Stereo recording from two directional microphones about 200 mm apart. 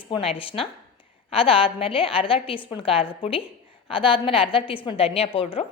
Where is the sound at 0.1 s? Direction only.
25° left (ahead or behind).